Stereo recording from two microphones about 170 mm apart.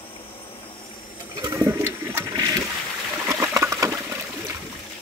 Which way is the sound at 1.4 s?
20° right (ahead or behind).